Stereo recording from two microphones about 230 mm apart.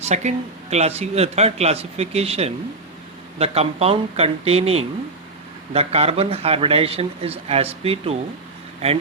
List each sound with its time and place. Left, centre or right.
0.0 s a man's voice: right